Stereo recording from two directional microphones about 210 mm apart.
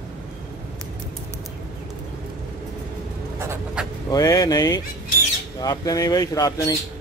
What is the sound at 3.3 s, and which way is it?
Writing, 10° right (ahead or behind).